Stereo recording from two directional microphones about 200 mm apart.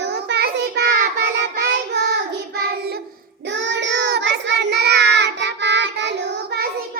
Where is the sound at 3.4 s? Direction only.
65° right (ahead or behind).